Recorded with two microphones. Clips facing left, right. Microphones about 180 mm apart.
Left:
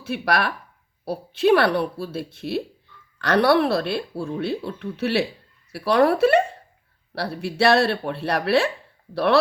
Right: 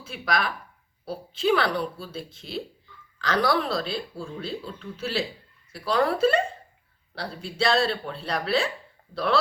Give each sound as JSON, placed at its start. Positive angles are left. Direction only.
{"t": 0.0, "sound": "speech", "side_deg": 70}